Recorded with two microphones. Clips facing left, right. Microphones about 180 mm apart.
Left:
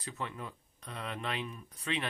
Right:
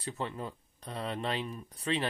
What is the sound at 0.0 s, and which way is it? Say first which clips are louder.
Speech: right 4 dB; 30° right (ahead or behind).